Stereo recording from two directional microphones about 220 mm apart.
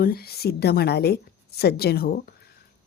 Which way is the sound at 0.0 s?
45° left (ahead or behind).